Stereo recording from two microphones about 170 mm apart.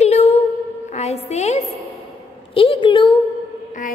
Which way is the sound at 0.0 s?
40° left (ahead or behind).